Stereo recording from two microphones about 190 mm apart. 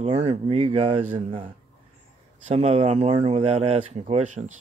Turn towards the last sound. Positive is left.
turn(degrees=-40)  # may be behind; listen again after turning